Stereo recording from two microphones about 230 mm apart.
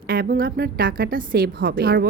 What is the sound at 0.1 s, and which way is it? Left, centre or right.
A woman's voice, right.